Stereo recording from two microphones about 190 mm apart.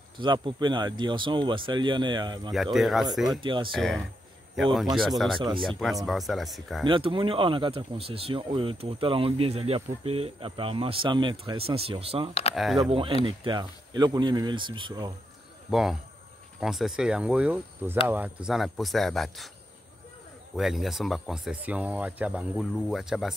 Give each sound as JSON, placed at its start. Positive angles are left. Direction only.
{"t": 0.2, "sound": "speech", "side_deg": -25}
{"t": 2.5, "sound": "speech", "side_deg": 0}
{"t": 3.3, "sound": "speech", "side_deg": -25}
{"t": 3.7, "sound": "speech", "side_deg": 0}
{"t": 6.8, "sound": "speech", "side_deg": -25}
{"t": 12.5, "sound": "speech", "side_deg": 0}
{"t": 12.9, "sound": "speech", "side_deg": -30}
{"t": 15.7, "sound": "speech", "side_deg": 0}
{"t": 20.5, "sound": "speech", "side_deg": 0}